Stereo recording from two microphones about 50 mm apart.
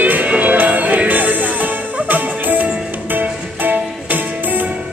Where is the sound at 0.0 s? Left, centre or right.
Right.